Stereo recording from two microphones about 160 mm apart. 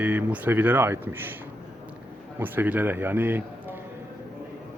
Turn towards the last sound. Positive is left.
turn(degrees=-15)  # may be behind; listen again after turning